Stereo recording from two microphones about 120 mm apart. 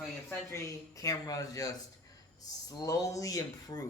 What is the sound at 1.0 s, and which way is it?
Speech, 30° left (ahead or behind).